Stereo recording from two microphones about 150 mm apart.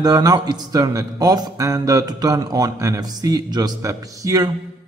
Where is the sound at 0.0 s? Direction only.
25° right (ahead or behind).